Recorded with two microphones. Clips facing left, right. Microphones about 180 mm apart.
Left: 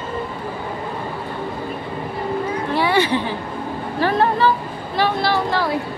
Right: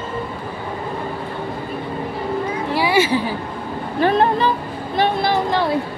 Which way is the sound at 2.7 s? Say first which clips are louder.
Right 1 dB; 10° right (ahead or behind).